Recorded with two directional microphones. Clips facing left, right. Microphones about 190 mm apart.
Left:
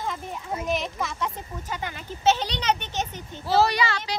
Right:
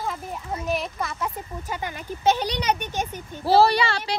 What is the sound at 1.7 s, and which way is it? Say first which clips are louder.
Speech: right 2 dB; 10° right (ahead or behind).